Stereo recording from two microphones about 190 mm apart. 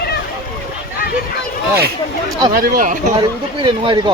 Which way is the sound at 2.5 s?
45° right (ahead or behind).